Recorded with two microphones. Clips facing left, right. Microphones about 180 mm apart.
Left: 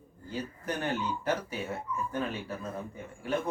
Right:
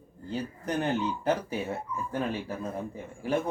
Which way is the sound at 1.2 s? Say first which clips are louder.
Right 4 dB; 30° right (ahead or behind).